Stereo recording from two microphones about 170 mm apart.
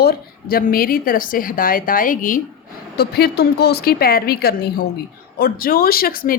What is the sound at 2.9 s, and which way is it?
A woman's voice, 70° left (ahead or behind).